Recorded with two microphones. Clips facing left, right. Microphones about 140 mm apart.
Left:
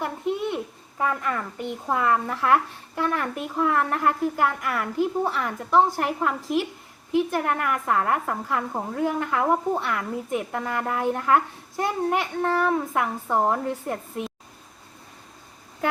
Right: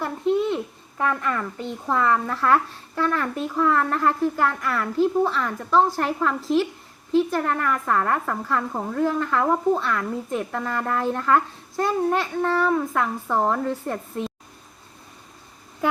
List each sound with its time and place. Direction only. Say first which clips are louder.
0.0 s a child's voice: right 4 dB; 15° left (ahead or behind)